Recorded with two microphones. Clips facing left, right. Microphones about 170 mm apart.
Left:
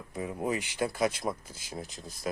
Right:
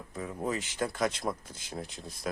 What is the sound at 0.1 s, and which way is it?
Speech, 15° left (ahead or behind).